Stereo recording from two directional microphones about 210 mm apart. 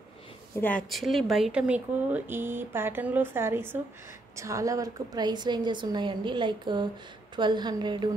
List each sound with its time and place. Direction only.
0.6 s a woman's voice: 5° left (ahead or behind); by 8.1 s 20° right (ahead or behind)